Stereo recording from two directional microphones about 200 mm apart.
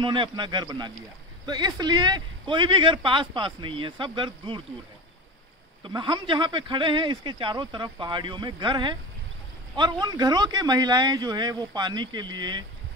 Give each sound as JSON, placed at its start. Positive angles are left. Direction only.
{"t": 0.0, "sound": "speech", "side_deg": -25}
{"t": 5.9, "sound": "speech", "side_deg": -25}